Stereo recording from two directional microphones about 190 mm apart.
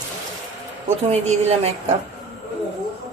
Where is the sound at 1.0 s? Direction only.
35° right (ahead or behind).